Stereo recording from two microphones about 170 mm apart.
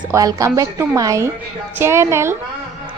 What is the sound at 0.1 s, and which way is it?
A woman's voice, 20° right (ahead or behind).